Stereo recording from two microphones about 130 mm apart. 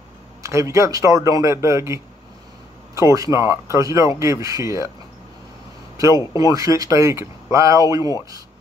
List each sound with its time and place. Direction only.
0.4 s a man's voice: 25° right (ahead or behind)
6.3 s a man's voice: 25° right (ahead or behind)